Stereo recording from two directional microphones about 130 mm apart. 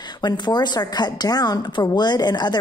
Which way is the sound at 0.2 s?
35° left (ahead or behind).